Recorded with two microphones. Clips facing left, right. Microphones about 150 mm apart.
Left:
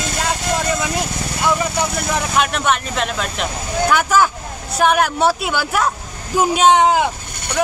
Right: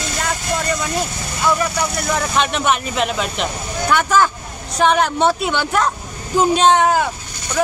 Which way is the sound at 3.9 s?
10° left (ahead or behind).